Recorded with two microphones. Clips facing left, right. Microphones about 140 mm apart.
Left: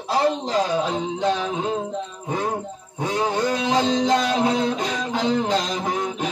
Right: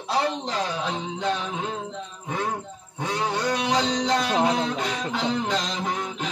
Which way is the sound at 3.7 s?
25° left (ahead or behind).